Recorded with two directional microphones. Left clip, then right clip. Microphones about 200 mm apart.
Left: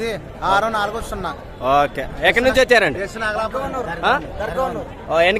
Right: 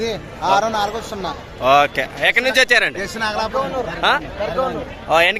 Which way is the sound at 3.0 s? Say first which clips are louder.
Right 1 dB; 45° right (ahead or behind).